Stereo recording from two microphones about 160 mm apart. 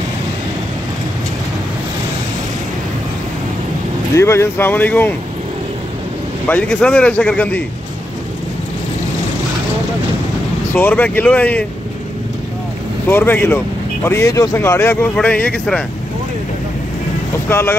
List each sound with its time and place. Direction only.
4.1 s a man's voice: 15° left (ahead or behind)
6.4 s a man's voice: 10° left (ahead or behind)
10.7 s a man's voice: 10° left (ahead or behind)
13.1 s a man's voice: 15° left (ahead or behind)
17.5 s a man's voice: 15° left (ahead or behind)